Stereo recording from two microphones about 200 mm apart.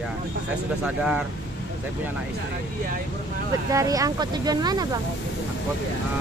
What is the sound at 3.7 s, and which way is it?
Speech, 15° right (ahead or behind).